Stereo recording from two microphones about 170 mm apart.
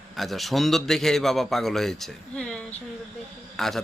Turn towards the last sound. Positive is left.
turn(degrees=0)  # may be behind; listen again after turning